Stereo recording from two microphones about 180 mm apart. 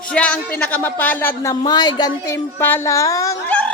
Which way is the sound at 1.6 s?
25° left (ahead or behind).